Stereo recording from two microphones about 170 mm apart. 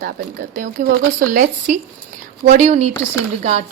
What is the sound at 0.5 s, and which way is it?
Speech, 45° right (ahead or behind).